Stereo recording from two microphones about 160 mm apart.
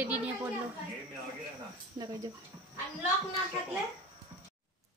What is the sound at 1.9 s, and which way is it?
Speech, 25° right (ahead or behind).